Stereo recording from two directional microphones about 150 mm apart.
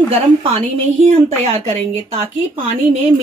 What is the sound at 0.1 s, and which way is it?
A woman's voice, 40° right (ahead or behind).